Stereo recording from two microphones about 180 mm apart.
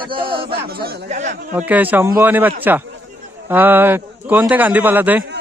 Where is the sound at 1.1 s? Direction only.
40° right (ahead or behind).